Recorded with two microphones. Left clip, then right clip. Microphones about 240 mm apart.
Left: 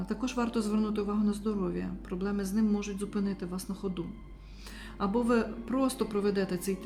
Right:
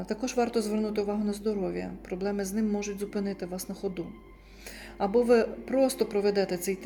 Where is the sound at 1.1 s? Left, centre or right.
Centre.